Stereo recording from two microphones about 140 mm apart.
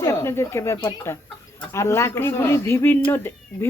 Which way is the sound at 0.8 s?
30° left (ahead or behind).